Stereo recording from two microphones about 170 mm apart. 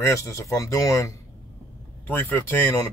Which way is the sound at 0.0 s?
15° left (ahead or behind).